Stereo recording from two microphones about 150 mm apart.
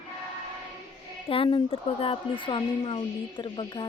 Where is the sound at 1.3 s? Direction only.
35° left (ahead or behind).